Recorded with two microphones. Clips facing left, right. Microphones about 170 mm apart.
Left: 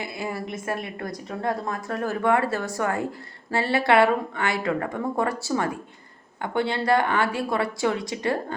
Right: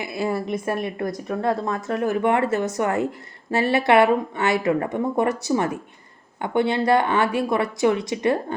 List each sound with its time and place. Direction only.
0.0 s speech: 20° right (ahead or behind)